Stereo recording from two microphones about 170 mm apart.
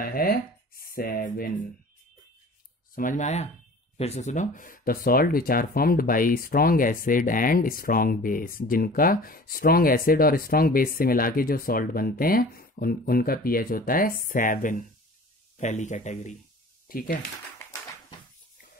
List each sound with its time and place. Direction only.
0.0 s speech: 60° left (ahead or behind)
3.0 s speech: 50° left (ahead or behind)
16.9 s speech: 55° left (ahead or behind)